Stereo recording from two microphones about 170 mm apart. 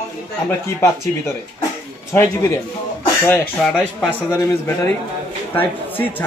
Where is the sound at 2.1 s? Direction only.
15° left (ahead or behind).